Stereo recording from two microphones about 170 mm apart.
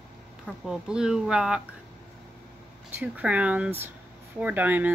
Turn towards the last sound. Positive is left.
turn(degrees=-10)  # may be behind; listen again after turning